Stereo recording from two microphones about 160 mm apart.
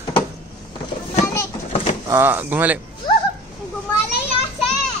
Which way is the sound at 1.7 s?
40° left (ahead or behind).